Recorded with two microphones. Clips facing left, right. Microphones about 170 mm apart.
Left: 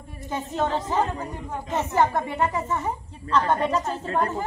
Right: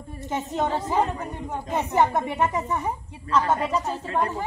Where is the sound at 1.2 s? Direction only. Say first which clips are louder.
Right 1 dB; 20° right (ahead or behind).